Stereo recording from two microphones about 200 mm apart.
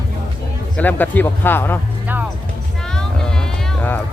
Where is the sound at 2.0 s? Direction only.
10° right (ahead or behind).